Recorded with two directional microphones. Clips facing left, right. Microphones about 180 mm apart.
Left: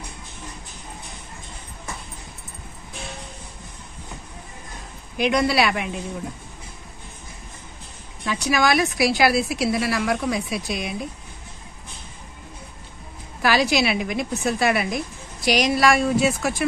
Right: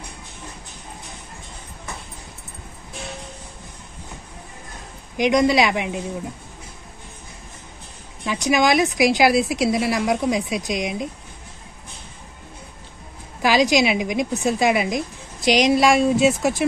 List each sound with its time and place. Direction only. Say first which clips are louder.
5.1 s a woman's voice: right 3 dB; 15° right (ahead or behind)
8.3 s a woman's voice: right 2 dB; 20° right (ahead or behind)
13.4 s a woman's voice: right 3 dB; 15° right (ahead or behind)